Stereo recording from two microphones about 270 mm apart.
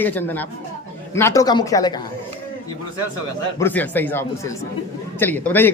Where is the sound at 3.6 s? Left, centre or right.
Centre.